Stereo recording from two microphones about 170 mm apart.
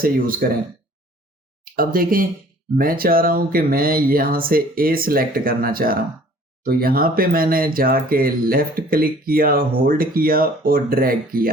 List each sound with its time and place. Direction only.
0.0 s speech: 60° right (ahead or behind)
1.7 s speech: 55° right (ahead or behind)